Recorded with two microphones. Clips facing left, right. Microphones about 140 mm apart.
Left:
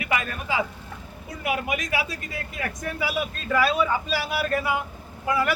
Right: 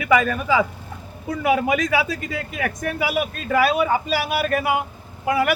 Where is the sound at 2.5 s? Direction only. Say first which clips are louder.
Right 5 dB; 80° right.